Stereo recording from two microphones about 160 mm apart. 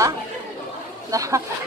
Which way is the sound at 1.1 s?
20° right (ahead or behind).